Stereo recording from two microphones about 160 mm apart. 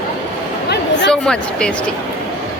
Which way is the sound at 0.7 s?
90° left.